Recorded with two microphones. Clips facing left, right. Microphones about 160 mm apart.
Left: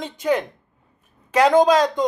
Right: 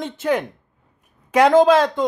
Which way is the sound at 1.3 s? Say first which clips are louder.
Right 2 dB; 10° right (ahead or behind).